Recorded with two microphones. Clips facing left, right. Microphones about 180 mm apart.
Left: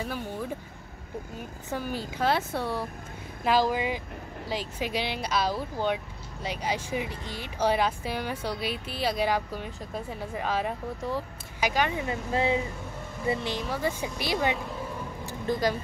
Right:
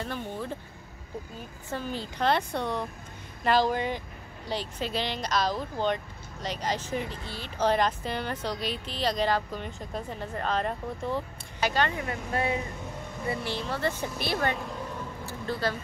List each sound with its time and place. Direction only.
0.0 s speech: 10° left (ahead or behind)
1.7 s speech: 10° left (ahead or behind)
15.2 s vehicle: 15° left (ahead or behind)